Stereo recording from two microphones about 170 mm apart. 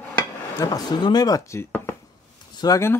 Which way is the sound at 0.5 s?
20° left (ahead or behind).